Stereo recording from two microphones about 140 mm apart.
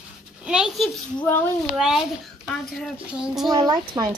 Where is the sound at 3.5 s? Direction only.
30° right (ahead or behind).